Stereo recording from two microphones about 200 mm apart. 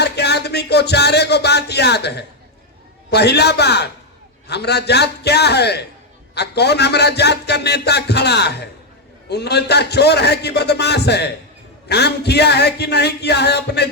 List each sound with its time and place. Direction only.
0.0 s music: 55° left (ahead or behind)
3.1 s a man's voice: 55° left (ahead or behind)